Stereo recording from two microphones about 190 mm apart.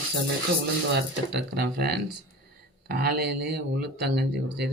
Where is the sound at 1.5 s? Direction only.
60° right (ahead or behind).